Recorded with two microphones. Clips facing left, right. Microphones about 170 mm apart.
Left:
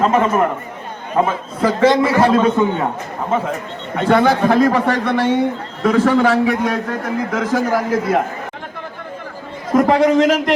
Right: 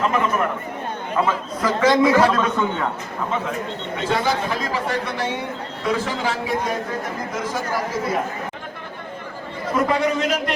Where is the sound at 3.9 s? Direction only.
60° left (ahead or behind).